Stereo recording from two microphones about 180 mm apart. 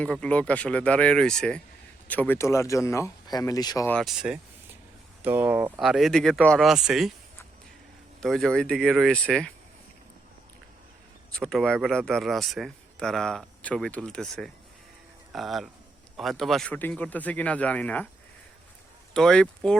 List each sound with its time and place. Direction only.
0.0 s speech: 5° left (ahead or behind)
3.8 s speech: 5° left (ahead or behind)
8.2 s speech: centre (ahead or behind)
11.3 s speech: 5° left (ahead or behind)
19.1 s speech: 5° left (ahead or behind)